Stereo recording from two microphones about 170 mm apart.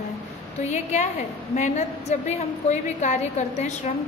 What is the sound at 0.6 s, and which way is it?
A woman's voice, 45° left (ahead or behind).